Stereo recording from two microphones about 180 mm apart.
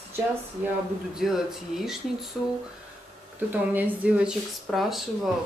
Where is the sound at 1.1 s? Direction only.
Centre (ahead or behind).